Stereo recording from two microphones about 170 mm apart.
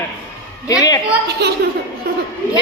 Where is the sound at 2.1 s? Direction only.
65° right (ahead or behind).